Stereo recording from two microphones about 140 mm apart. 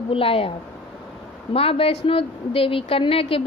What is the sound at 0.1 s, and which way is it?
Speech, 40° left (ahead or behind).